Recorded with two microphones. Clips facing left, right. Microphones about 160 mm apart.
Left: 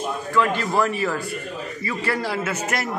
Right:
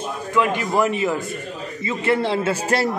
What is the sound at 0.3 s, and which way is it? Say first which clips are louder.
A man's voice: right 2 dB; 15° right (ahead or behind).